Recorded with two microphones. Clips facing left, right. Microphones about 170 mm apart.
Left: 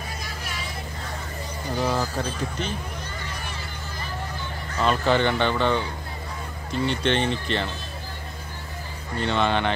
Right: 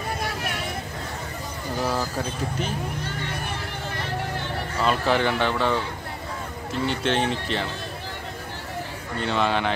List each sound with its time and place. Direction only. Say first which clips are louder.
0.2 s vehicle: right 6 dB; 65° right (ahead or behind)
1.8 s a sound: left 1 dB; 5° right (ahead or behind)
3.9 s vehicle: right 4 dB; 75° right (ahead or behind)
4.8 s speech: left 1 dB; 5° right (ahead or behind)
6.9 s speech: even; 5° right (ahead or behind)
9.2 s speech: left 1 dB; 5° right (ahead or behind)